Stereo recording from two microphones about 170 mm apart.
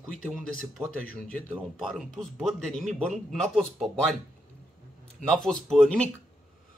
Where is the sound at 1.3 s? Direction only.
Centre (ahead or behind).